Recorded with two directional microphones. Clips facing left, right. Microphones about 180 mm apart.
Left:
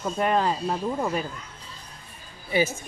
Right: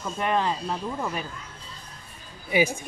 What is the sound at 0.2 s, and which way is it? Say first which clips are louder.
Speech: left 2 dB; 40° left (ahead or behind).